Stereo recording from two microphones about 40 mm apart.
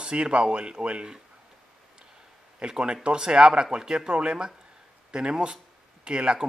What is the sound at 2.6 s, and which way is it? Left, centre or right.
A man's voice, right.